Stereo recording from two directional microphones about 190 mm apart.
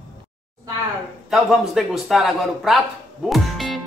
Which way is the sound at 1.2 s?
Centre (ahead or behind).